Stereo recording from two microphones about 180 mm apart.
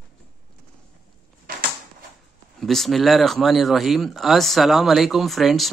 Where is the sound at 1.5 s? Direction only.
55° right (ahead or behind).